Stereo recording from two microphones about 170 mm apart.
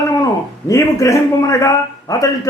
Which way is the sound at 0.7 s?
20° left (ahead or behind).